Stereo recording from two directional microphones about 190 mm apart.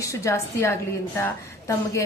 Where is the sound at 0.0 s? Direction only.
15° left (ahead or behind).